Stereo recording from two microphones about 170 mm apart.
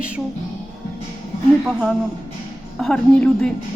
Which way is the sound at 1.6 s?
Centre (ahead or behind).